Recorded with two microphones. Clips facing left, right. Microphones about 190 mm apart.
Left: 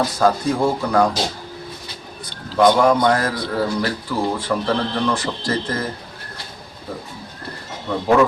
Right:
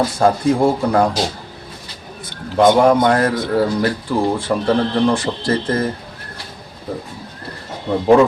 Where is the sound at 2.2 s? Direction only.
20° right (ahead or behind).